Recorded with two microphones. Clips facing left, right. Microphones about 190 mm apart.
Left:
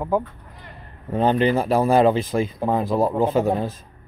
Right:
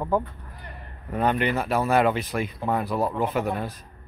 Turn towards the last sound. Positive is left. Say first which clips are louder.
# left 6 dB
turn(degrees=25)  # may be behind; listen again after turning